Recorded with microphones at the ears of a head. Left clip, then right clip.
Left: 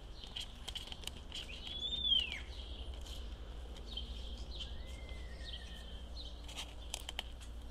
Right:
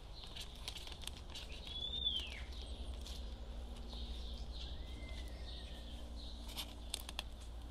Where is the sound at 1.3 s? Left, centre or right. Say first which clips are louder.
Left 4 dB; left.